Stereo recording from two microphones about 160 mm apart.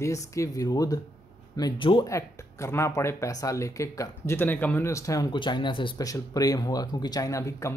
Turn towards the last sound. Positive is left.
turn(degrees=20)  # may be behind; listen again after turning